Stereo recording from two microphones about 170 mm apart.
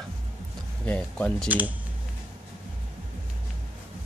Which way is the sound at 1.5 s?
10° right (ahead or behind).